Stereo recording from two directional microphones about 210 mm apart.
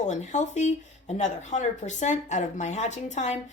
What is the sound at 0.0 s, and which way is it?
Speech, 35° left (ahead or behind).